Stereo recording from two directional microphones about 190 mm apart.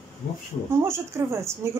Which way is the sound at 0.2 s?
50° left (ahead or behind).